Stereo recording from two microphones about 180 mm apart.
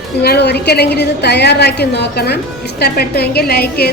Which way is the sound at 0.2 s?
65° left (ahead or behind).